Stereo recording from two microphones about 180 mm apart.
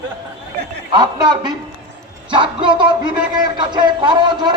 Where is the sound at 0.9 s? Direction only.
25° right (ahead or behind).